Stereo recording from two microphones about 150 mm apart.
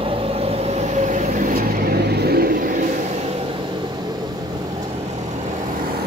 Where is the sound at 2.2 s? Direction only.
90° right.